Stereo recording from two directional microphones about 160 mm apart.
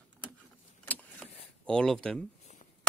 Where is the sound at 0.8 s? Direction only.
10° left (ahead or behind).